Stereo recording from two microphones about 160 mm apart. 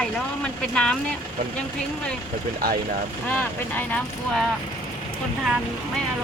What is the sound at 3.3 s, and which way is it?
Speech, 10° left (ahead or behind).